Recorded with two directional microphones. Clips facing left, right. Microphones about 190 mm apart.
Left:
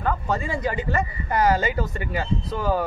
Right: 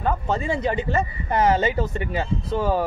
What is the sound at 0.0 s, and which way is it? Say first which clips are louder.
Speech: right 1 dB; 25° right (ahead or behind).